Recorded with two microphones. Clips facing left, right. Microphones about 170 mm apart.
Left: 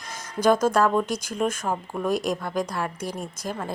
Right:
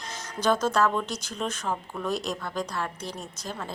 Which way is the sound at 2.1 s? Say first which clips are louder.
Left 7 dB; 50° left (ahead or behind).